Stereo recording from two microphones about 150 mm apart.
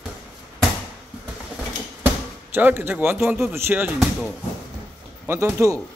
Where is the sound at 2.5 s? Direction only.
15° right (ahead or behind).